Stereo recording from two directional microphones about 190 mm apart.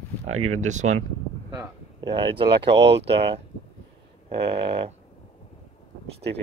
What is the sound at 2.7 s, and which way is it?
Speech, 65° right (ahead or behind).